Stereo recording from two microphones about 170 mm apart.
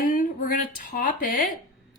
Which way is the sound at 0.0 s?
55° left (ahead or behind).